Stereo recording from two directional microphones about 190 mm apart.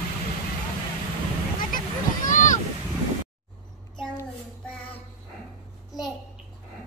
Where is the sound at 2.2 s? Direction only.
45° left (ahead or behind).